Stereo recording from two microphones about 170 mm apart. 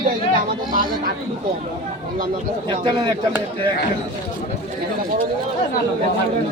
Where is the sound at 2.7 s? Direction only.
25° right (ahead or behind).